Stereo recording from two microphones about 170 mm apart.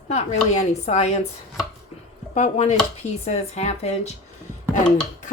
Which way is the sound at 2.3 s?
45° left (ahead or behind).